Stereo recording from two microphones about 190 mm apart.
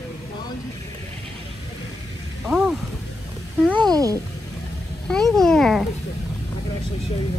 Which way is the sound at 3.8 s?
20° right (ahead or behind).